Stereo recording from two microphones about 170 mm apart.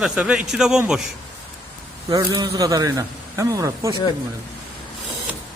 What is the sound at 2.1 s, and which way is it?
A man's voice, 25° right (ahead or behind).